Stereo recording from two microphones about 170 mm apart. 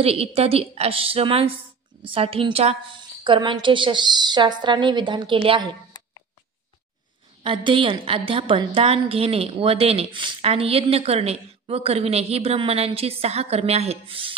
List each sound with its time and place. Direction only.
0.0 s a woman's voice: 35° right (ahead or behind)
7.4 s a woman's voice: 30° right (ahead or behind)